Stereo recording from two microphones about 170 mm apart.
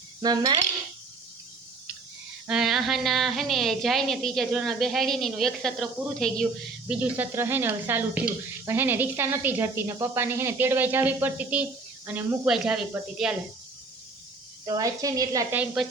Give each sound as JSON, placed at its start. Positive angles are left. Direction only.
{"t": 0.2, "sound": "a woman's voice", "side_deg": -25}
{"t": 2.5, "sound": "a woman's voice", "side_deg": -5}
{"t": 14.6, "sound": "a woman's voice", "side_deg": -20}
{"t": 15.5, "sound": "speech", "side_deg": -5}